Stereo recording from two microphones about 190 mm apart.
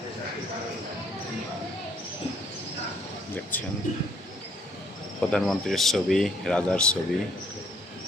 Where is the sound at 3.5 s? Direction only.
10° left (ahead or behind).